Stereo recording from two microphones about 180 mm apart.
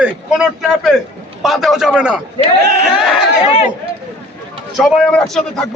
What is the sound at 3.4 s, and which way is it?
Speech, 35° left (ahead or behind).